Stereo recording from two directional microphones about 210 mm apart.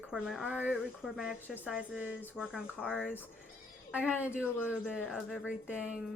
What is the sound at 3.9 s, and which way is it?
Speech, 5° right (ahead or behind).